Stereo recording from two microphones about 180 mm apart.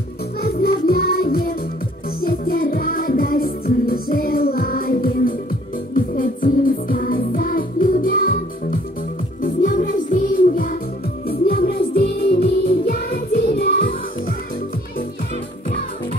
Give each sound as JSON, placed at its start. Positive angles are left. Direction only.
{"t": 0.4, "sound": "music", "side_deg": 55}
{"t": 11.2, "sound": "music", "side_deg": 55}